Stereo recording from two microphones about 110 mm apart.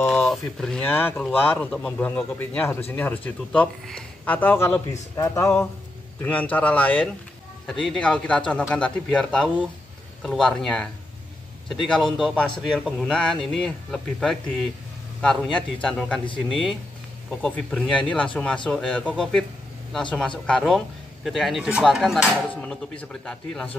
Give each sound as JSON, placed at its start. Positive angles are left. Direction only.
{"t": 0.1, "sound": "speech", "side_deg": 5}
{"t": 0.8, "sound": "speech", "side_deg": 20}
{"t": 5.1, "sound": "speech", "side_deg": 30}
{"t": 6.2, "sound": "speech", "side_deg": 15}
{"t": 7.6, "sound": "a man's voice", "side_deg": 0}
{"t": 22.5, "sound": "speech", "side_deg": 10}